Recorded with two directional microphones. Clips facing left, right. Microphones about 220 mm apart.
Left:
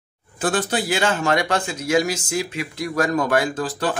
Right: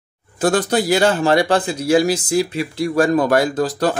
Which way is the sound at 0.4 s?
40° right (ahead or behind).